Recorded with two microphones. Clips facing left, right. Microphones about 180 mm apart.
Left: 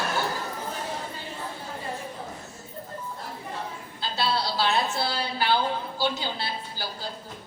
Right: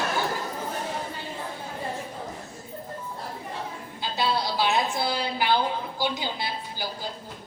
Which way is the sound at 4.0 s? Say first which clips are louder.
Right 1 dB; 15° right (ahead or behind).